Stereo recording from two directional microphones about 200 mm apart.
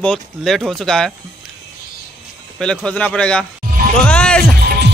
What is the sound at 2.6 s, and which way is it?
Speech, 5° left (ahead or behind).